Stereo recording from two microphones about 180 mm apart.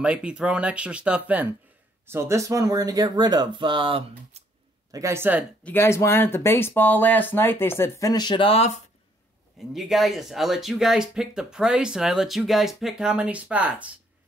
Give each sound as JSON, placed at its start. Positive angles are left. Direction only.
{"t": 0.0, "sound": "speech", "side_deg": -5}
{"t": 4.9, "sound": "speech", "side_deg": -15}
{"t": 5.6, "sound": "speech", "side_deg": 10}
{"t": 9.8, "sound": "speech", "side_deg": 0}